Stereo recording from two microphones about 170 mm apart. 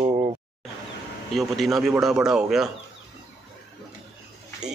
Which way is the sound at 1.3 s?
Centre (ahead or behind).